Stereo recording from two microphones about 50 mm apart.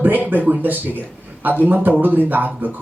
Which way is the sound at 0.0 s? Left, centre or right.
Right.